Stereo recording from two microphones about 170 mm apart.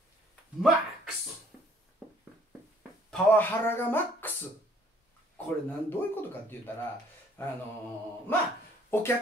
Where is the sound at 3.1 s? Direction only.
10° left (ahead or behind).